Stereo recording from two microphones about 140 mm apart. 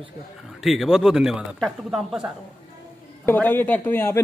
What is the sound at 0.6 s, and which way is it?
Speech, centre (ahead or behind).